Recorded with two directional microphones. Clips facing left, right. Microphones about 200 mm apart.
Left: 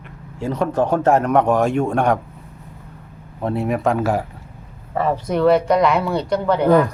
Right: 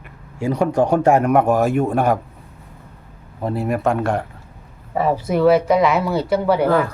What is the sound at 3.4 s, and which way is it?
Speech, centre (ahead or behind).